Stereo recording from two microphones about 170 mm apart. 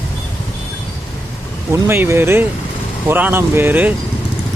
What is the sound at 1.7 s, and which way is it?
Speech, 15° right (ahead or behind).